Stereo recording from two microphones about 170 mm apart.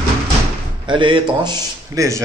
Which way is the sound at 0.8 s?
30° right (ahead or behind).